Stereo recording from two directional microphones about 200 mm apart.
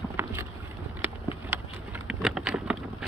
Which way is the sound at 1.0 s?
5° right (ahead or behind).